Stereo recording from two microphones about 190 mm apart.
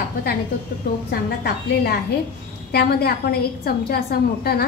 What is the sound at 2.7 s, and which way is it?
A woman's voice, 55° left (ahead or behind).